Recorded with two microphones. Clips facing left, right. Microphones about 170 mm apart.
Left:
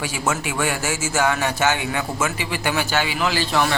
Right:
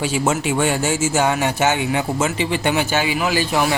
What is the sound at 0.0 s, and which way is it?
A man's voice, 25° right (ahead or behind).